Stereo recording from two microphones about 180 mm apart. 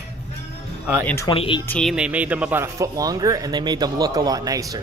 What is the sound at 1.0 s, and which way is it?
Speech, 15° left (ahead or behind).